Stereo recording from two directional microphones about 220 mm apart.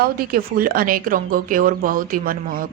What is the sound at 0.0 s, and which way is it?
Speech, 40° right (ahead or behind).